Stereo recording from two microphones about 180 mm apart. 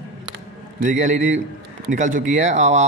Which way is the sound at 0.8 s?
45° right (ahead or behind).